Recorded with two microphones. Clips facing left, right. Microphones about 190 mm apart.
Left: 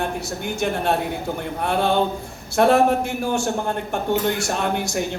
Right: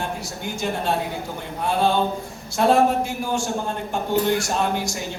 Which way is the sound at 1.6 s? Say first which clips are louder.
Even; 60° left (ahead or behind).